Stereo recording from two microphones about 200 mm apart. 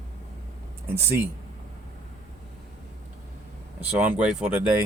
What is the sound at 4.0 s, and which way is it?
Speech, 5° right (ahead or behind).